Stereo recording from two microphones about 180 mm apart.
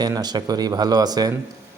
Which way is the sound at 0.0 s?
20° right (ahead or behind).